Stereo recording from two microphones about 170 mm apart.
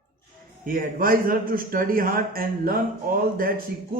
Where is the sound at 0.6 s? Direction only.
55° right (ahead or behind).